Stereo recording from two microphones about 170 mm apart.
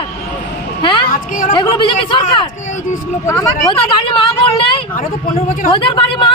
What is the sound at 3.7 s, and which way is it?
Speech, 30° left (ahead or behind).